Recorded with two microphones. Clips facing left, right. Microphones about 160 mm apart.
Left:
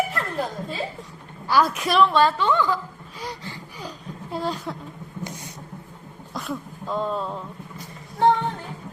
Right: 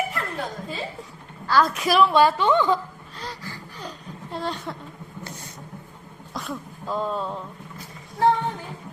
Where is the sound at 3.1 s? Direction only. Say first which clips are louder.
Left 2 dB; 10° left (ahead or behind).